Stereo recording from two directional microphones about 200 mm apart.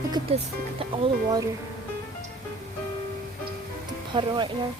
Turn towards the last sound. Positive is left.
turn(degrees=-25)  # may be behind; listen again after turning